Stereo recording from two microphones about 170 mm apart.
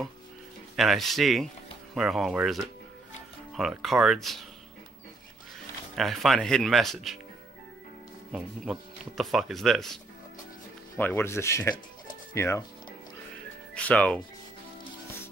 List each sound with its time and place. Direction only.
0.7 s speech: centre (ahead or behind)
5.9 s speech: centre (ahead or behind)
8.3 s speech: 5° right (ahead or behind)
11.0 s speech: 10° left (ahead or behind)
13.7 s speech: 10° left (ahead or behind)